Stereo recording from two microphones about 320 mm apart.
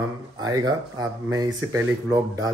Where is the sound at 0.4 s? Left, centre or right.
Centre.